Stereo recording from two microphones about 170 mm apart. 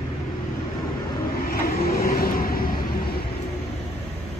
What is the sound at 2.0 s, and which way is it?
Vehicle, 55° left (ahead or behind).